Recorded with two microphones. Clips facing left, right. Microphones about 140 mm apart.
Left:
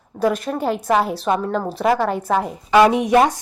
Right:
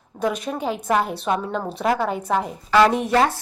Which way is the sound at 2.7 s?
15° left (ahead or behind).